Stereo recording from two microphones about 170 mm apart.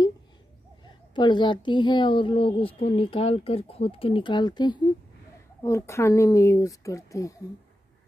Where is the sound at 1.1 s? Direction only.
25° left (ahead or behind).